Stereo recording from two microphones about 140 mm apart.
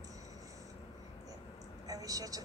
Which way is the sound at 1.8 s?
25° right (ahead or behind).